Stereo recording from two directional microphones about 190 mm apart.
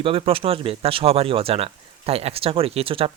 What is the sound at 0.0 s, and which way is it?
Speech, 30° right (ahead or behind).